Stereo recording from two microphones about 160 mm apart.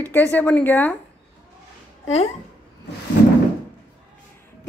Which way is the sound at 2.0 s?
40° left (ahead or behind).